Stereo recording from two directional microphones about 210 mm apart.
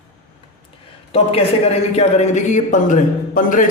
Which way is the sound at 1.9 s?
30° left (ahead or behind).